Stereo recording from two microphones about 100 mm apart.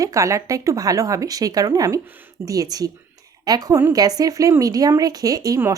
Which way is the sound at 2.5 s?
40° right (ahead or behind).